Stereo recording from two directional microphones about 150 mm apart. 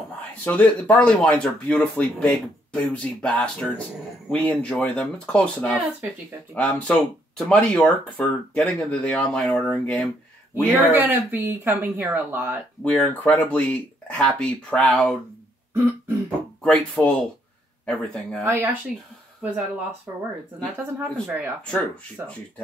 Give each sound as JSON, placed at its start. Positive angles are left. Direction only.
{"t": 0.5, "sound": "speech", "side_deg": 10}
{"t": 10.5, "sound": "speech", "side_deg": -15}
{"t": 12.9, "sound": "speech", "side_deg": 10}
{"t": 15.7, "sound": "throat clearing", "side_deg": -15}
{"t": 16.6, "sound": "speech", "side_deg": 5}
{"t": 18.4, "sound": "speech", "side_deg": -15}
{"t": 20.8, "sound": "speech", "side_deg": -10}